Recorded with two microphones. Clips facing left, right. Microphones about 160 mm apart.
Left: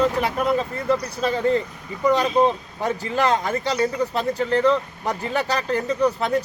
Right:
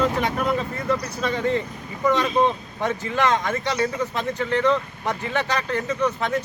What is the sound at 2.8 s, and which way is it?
Speech, 35° left (ahead or behind).